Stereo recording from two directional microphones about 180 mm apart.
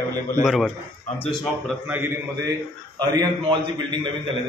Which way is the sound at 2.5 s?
25° right (ahead or behind).